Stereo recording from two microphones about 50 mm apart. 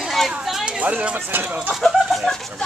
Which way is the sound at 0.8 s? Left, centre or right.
Right.